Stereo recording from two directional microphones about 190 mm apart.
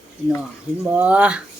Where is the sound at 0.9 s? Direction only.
5° right (ahead or behind).